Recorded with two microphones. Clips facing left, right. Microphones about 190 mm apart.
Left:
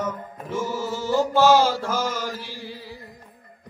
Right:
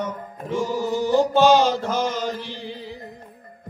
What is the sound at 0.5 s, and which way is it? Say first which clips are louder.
Mantra: right 4 dB; 15° right (ahead or behind).